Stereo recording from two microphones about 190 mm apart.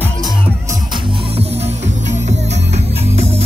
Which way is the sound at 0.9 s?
30° right (ahead or behind).